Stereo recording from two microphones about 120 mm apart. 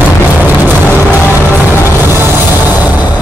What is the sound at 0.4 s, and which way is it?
Music, 15° right (ahead or behind).